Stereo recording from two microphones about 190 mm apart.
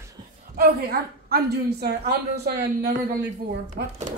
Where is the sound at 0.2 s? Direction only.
20° right (ahead or behind).